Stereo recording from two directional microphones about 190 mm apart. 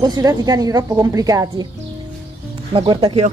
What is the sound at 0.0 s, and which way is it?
Speech, 20° right (ahead or behind).